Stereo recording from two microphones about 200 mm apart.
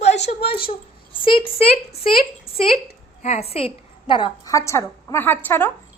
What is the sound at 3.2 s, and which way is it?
A woman's voice, 30° left (ahead or behind).